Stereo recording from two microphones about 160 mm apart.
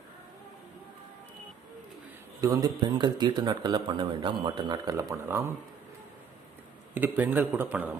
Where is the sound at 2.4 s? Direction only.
20° right (ahead or behind).